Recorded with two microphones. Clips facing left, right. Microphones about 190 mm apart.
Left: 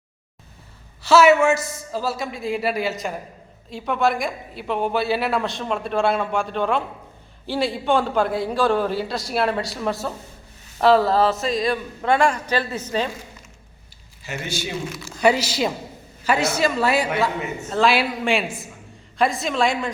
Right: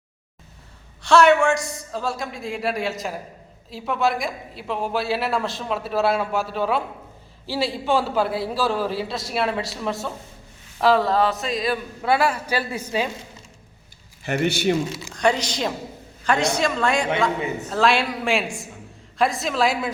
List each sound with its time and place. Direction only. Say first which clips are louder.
1.0 s a woman's voice: left 1 dB; 5° left (ahead or behind)
14.3 s a man's voice: right 9 dB; 65° right (ahead or behind)
15.1 s a woman's voice: left 3 dB; 5° left (ahead or behind)